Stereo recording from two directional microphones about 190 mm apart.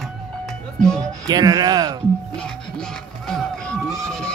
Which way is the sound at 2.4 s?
5° left (ahead or behind).